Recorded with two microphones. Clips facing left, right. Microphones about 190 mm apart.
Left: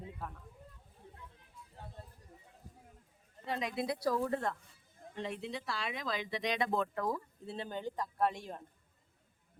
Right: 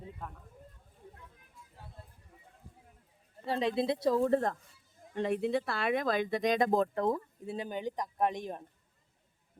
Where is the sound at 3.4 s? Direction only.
30° right (ahead or behind).